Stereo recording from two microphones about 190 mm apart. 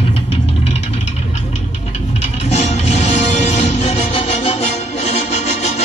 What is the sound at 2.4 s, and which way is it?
Music, 35° left (ahead or behind).